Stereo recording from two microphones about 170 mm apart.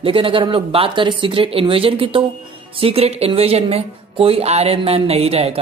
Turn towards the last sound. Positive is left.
turn(degrees=-35)  # may be behind; listen again after turning